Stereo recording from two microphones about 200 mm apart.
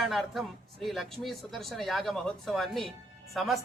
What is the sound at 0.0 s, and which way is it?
Speech, centre (ahead or behind).